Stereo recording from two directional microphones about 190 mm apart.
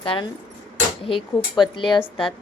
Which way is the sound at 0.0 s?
25° left (ahead or behind).